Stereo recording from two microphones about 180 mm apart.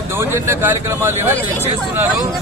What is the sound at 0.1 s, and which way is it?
Speech, 15° right (ahead or behind).